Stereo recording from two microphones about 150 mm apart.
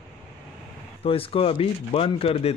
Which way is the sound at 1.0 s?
40° left (ahead or behind).